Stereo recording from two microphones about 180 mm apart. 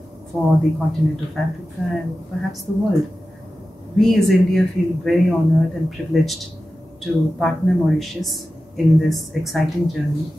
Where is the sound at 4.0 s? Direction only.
Centre (ahead or behind).